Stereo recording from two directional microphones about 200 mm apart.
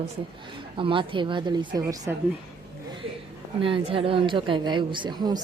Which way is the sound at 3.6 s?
25° right (ahead or behind).